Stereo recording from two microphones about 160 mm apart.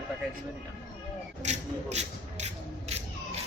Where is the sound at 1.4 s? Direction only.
45° right (ahead or behind).